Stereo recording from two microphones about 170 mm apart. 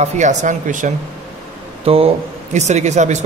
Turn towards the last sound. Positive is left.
turn(degrees=-45)  # may be behind; listen again after turning